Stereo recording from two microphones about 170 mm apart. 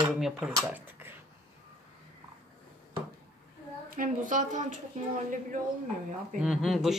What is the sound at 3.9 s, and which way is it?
Speech, 50° right (ahead or behind).